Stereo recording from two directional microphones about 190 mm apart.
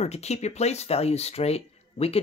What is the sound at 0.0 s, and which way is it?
Speech, 35° left (ahead or behind).